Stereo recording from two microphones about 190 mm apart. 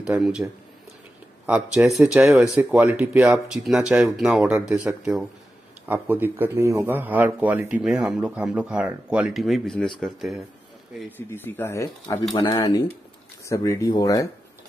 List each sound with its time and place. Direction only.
0.0 s speech: 5° right (ahead or behind); by 14.2 s 20° left (ahead or behind)